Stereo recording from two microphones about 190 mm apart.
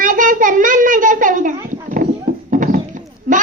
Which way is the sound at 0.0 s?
45° right (ahead or behind).